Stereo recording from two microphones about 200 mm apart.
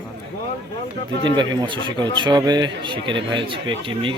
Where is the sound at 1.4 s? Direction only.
25° right (ahead or behind).